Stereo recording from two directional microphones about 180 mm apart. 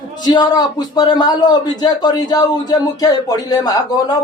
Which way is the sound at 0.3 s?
20° left (ahead or behind).